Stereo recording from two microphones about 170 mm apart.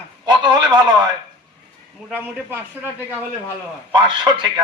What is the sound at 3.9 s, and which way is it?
Speech, 25° right (ahead or behind).